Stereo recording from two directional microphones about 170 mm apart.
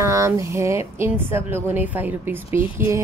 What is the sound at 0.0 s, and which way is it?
A woman's voice, 15° right (ahead or behind).